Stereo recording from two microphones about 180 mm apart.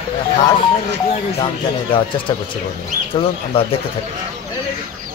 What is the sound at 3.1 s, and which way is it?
Speech, 30° left (ahead or behind).